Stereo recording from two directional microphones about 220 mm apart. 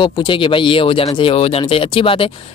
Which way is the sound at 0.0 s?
20° left (ahead or behind).